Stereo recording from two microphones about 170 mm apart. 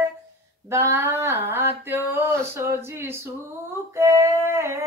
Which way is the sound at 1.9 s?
15° right (ahead or behind).